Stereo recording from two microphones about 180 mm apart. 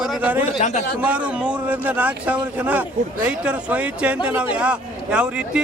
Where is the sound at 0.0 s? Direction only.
10° right (ahead or behind).